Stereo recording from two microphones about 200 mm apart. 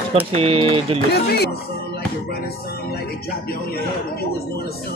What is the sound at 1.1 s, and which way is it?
Speech, 55° left (ahead or behind).